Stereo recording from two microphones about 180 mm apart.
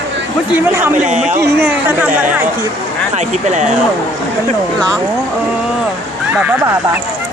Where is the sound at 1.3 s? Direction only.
15° right (ahead or behind).